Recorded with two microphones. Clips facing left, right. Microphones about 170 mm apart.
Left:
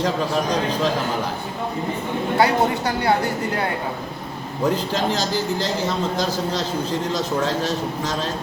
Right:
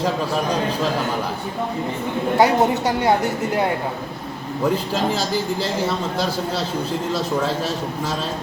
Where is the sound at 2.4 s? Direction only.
25° right (ahead or behind).